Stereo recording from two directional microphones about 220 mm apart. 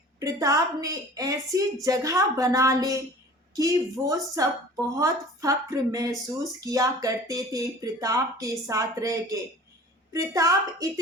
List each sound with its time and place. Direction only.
0.2 s a woman's voice: 15° right (ahead or behind)